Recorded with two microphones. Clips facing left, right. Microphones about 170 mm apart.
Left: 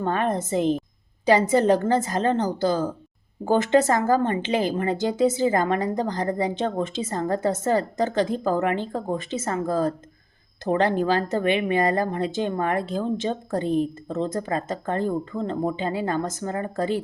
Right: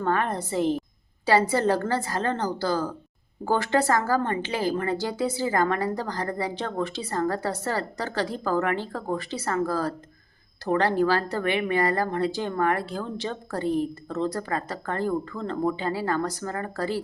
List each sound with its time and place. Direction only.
0.0 s speech: 20° left (ahead or behind)